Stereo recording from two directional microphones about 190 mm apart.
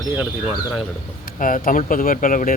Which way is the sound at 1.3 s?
45° left (ahead or behind).